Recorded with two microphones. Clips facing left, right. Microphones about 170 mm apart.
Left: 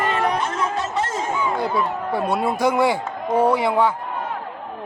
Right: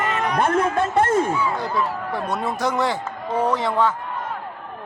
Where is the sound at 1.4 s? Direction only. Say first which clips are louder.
Left 2 dB; 15° left (ahead or behind).